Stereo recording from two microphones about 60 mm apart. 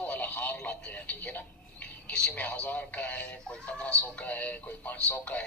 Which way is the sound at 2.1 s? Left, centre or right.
Centre.